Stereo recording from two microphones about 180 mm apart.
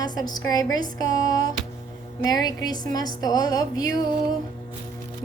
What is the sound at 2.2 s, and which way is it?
A woman's voice, 20° left (ahead or behind).